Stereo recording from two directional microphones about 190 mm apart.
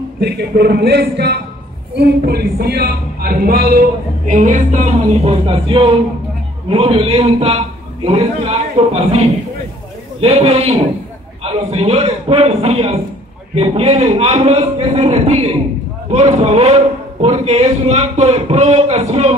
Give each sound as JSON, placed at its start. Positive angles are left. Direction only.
{"t": 0.2, "sound": "a man's voice", "side_deg": -60}
{"t": 4.3, "sound": "a man's voice", "side_deg": -40}
{"t": 10.2, "sound": "a man's voice", "side_deg": -30}